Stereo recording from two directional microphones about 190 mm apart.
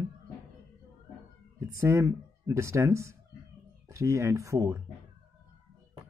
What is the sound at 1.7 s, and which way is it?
A man's voice, 15° right (ahead or behind).